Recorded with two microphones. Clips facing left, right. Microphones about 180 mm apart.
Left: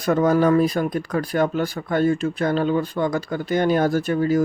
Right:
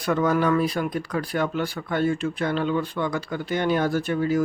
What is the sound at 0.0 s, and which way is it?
Speech, 40° left (ahead or behind).